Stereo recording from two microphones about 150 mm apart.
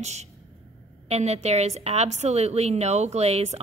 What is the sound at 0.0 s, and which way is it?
A woman's voice, 50° right (ahead or behind).